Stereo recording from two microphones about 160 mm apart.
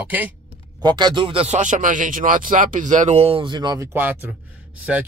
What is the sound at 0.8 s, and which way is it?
Speech, 30° right (ahead or behind).